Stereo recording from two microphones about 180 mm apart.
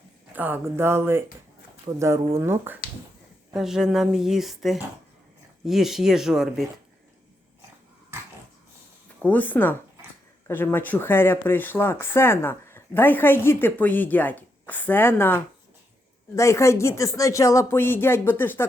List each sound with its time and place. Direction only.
0.3 s speech: 10° right (ahead or behind)
1.9 s speech: 25° right (ahead or behind)
2.3 s speech: 15° right (ahead or behind)
3.5 s speech: centre (ahead or behind)
9.2 s speech: 10° left (ahead or behind)